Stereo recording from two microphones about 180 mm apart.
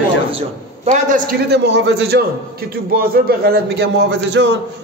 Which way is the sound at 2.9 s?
55° right (ahead or behind).